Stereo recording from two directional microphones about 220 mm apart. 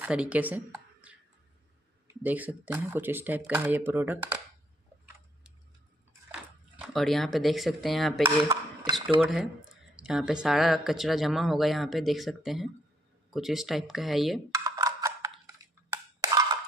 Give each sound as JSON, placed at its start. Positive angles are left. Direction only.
{"t": 0.0, "sound": "speech", "side_deg": -5}
{"t": 1.1, "sound": "music", "side_deg": -5}
{"t": 2.2, "sound": "speech", "side_deg": -5}
{"t": 6.8, "sound": "speech", "side_deg": 0}
{"t": 8.2, "sound": "speech", "side_deg": -15}
{"t": 9.2, "sound": "speech", "side_deg": 0}
{"t": 14.5, "sound": "music", "side_deg": -15}
{"t": 15.9, "sound": "a sound", "side_deg": -15}